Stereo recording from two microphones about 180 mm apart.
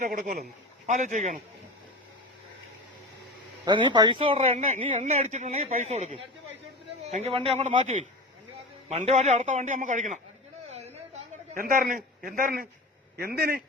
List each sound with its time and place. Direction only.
0.0 s a man's voice: 45° right (ahead or behind)
3.7 s speech: 25° right (ahead or behind)
10.7 s a sound: 40° right (ahead or behind)
11.6 s a man's voice: 50° right (ahead or behind)